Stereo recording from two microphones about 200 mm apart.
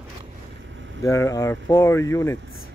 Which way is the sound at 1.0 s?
15° left (ahead or behind).